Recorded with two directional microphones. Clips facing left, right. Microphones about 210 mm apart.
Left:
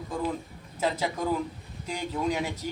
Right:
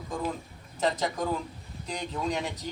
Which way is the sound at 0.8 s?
10° left (ahead or behind).